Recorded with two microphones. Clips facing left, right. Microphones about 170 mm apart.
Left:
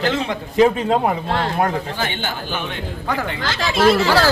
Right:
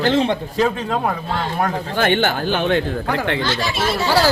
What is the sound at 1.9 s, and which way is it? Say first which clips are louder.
Speech: right 8 dB; 65° right (ahead or behind).